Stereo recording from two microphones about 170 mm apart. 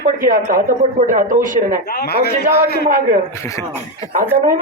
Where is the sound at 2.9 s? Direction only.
50° right (ahead or behind).